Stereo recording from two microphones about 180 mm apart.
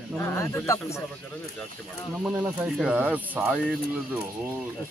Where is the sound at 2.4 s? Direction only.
5° right (ahead or behind).